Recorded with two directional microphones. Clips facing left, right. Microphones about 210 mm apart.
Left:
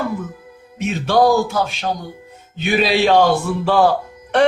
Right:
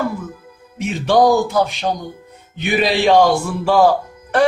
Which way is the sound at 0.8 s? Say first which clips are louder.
Right 1 dB; 15° right (ahead or behind).